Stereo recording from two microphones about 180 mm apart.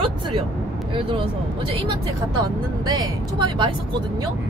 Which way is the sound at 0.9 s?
30° right (ahead or behind).